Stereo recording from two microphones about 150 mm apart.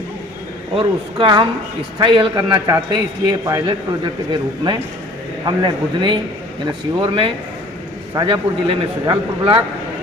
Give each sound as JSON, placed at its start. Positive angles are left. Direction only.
{"t": 0.8, "sound": "a man's voice", "side_deg": -35}
{"t": 2.3, "sound": "a man's voice", "side_deg": -20}